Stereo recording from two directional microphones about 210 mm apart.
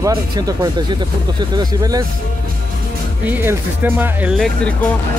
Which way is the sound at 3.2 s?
10° right (ahead or behind).